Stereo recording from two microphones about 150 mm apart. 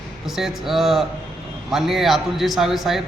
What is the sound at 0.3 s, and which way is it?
A man's voice, centre (ahead or behind).